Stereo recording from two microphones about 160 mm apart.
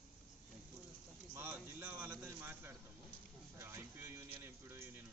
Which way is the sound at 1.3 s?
10° right (ahead or behind).